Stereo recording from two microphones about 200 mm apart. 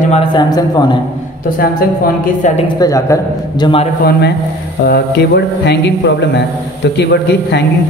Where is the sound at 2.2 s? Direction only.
35° left (ahead or behind).